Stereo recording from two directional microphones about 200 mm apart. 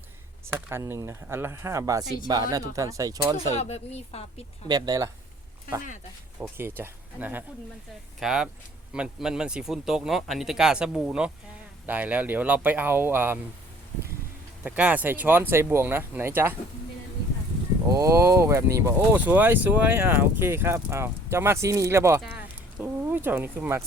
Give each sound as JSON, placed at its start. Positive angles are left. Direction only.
{"t": 0.4, "sound": "speech", "side_deg": -10}
{"t": 3.5, "sound": "speech", "side_deg": 35}
{"t": 4.7, "sound": "speech", "side_deg": -15}
{"t": 6.4, "sound": "speech", "side_deg": -10}
{"t": 14.6, "sound": "speech", "side_deg": -5}
{"t": 17.8, "sound": "speech", "side_deg": -15}